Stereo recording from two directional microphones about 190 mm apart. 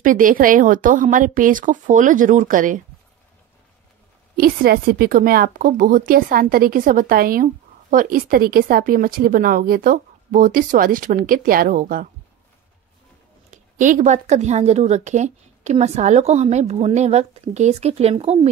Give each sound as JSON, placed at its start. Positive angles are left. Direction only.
{"t": 0.0, "sound": "a woman's voice", "side_deg": -45}
{"t": 4.4, "sound": "a woman's voice", "side_deg": -50}
{"t": 13.5, "sound": "speech", "side_deg": -40}